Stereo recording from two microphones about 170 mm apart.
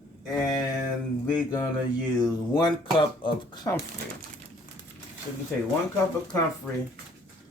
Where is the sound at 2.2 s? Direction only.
25° left (ahead or behind).